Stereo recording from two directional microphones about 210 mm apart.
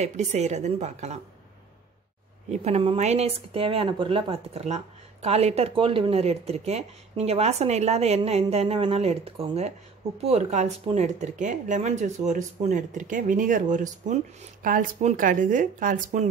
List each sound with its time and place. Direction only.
0.0 s speech: 35° right (ahead or behind)
2.5 s a woman's voice: 30° right (ahead or behind)